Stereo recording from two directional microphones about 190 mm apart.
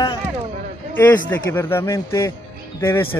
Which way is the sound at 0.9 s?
10° left (ahead or behind).